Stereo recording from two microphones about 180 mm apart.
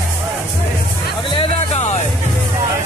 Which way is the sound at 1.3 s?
30° left (ahead or behind).